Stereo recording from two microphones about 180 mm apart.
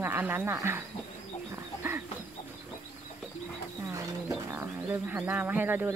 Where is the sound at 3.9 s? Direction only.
15° right (ahead or behind).